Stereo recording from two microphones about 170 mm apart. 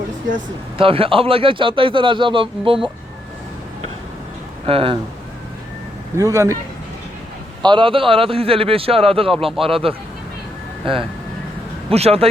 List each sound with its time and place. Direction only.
0.8 s a man's voice: 30° right (ahead or behind)
4.6 s a man's voice: 35° right (ahead or behind)
6.1 s speech: 20° right (ahead or behind)
7.6 s a man's voice: 30° right (ahead or behind)